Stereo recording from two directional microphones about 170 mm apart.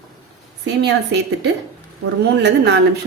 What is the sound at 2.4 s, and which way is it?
Speech, 75° right (ahead or behind).